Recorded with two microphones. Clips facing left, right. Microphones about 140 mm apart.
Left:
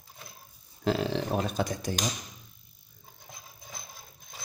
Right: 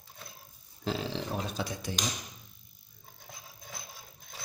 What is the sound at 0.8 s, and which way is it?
Speech, 60° left (ahead or behind).